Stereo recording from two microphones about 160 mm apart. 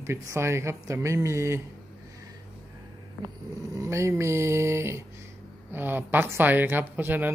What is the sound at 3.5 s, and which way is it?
A woman's voice, 20° right (ahead or behind).